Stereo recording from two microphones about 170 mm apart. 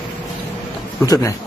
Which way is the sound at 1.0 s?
20° left (ahead or behind).